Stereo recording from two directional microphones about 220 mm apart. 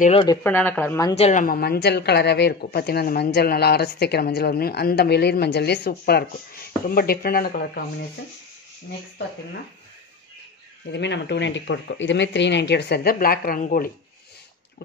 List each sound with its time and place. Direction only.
0.2 s speech: 15° left (ahead or behind)
1.1 s a woman's voice: 30° left (ahead or behind)
10.9 s a woman's voice: 50° left (ahead or behind)